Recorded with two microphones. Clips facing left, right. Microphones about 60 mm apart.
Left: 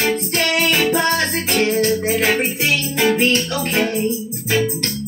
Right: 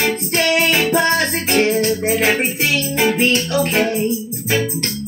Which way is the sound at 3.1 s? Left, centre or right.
Centre.